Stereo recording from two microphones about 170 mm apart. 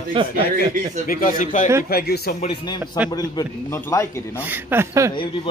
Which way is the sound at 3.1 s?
20° left (ahead or behind).